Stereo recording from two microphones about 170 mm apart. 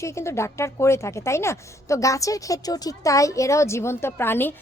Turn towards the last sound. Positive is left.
turn(degrees=15)  # may be behind; listen again after turning